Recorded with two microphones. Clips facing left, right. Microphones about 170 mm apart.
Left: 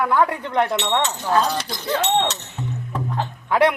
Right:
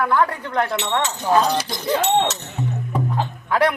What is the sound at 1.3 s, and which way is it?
Speech, 15° right (ahead or behind).